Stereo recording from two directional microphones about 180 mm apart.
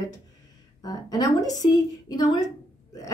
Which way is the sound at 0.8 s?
20° left (ahead or behind).